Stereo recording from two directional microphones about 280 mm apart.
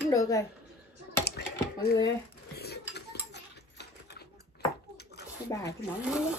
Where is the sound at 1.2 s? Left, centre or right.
Left.